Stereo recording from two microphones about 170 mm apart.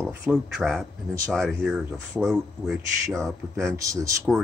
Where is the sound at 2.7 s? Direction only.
15° right (ahead or behind).